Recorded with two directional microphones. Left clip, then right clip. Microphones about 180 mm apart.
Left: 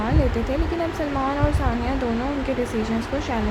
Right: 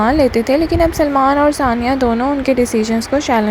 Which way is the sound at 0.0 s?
40° right (ahead or behind).